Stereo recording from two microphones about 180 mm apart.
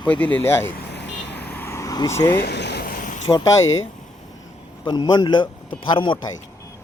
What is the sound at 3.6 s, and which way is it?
Speech, 90° left.